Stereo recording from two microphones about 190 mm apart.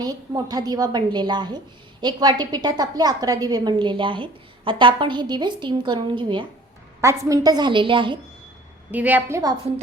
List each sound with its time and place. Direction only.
0.0 s a woman's voice: 20° right (ahead or behind)
8.9 s a woman's voice: 10° right (ahead or behind)